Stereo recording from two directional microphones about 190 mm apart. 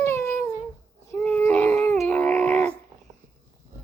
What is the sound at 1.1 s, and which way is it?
Dog, 5° left (ahead or behind).